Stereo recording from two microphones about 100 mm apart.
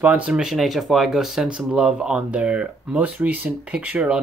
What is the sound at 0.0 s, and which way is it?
Speech, 15° right (ahead or behind).